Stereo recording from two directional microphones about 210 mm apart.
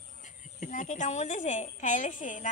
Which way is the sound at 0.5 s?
40° left (ahead or behind).